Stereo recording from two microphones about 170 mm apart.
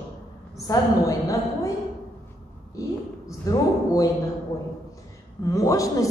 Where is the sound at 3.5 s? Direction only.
20° left (ahead or behind).